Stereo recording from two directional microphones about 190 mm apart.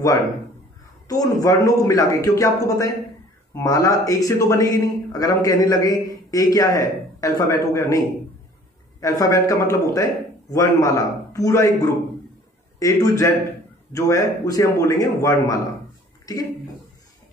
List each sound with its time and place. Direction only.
1.0 s a man's voice: 20° left (ahead or behind)
9.0 s a man's voice: 15° left (ahead or behind)